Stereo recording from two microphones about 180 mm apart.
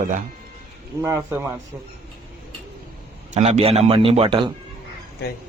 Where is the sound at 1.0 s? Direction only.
15° right (ahead or behind).